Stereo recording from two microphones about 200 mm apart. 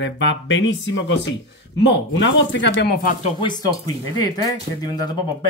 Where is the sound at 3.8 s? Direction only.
20° left (ahead or behind).